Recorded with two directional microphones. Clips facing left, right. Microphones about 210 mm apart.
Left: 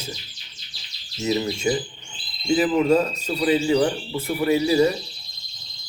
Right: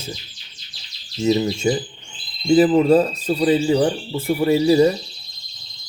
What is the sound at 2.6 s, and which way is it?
A man's voice, 35° right (ahead or behind).